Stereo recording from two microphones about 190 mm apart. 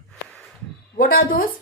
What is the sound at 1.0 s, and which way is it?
Speech, 50° left (ahead or behind).